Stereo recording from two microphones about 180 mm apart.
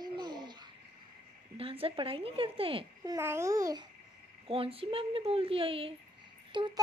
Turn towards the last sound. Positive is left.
turn(degrees=-25)  # may be behind; listen again after turning